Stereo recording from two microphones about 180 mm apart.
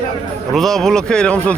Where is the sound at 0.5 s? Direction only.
Centre (ahead or behind).